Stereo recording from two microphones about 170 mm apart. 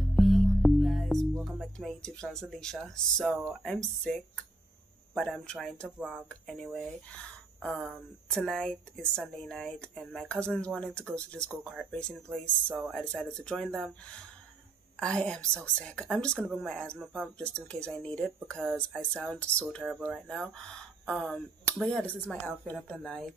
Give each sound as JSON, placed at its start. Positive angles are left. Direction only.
{"t": 0.1, "sound": "music", "side_deg": 0}
{"t": 3.4, "sound": "speech", "side_deg": 5}
{"t": 8.3, "sound": "speech", "side_deg": 5}